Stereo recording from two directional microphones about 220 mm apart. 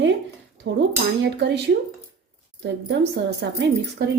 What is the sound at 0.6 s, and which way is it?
A woman's voice, 55° right (ahead or behind).